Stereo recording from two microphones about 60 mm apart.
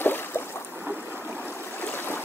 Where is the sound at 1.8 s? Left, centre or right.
Left.